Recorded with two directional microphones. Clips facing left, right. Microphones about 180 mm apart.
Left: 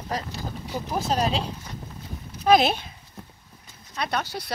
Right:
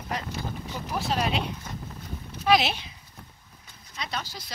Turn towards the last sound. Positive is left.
turn(degrees=60)  # may be behind; listen again after turning